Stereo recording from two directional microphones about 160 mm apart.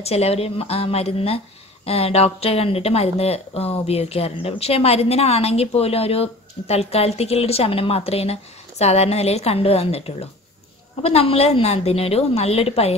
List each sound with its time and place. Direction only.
0.0 s speech: 40° left (ahead or behind)